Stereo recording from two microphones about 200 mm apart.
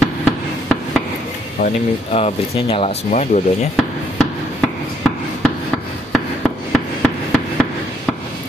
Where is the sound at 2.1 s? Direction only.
30° left (ahead or behind).